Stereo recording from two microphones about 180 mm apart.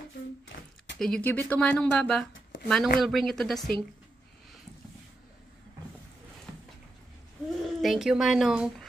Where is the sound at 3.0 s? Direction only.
Centre (ahead or behind).